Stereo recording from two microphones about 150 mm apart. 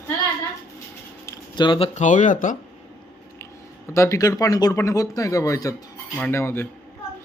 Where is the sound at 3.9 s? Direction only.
20° left (ahead or behind).